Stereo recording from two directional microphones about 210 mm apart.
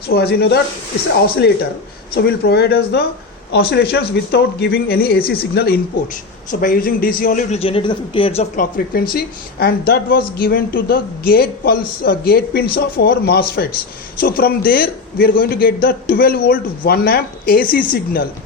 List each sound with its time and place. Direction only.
0.1 s a man's voice: 50° left (ahead or behind); by 8.6 s 30° left (ahead or behind)
8.9 s speech: 45° left (ahead or behind)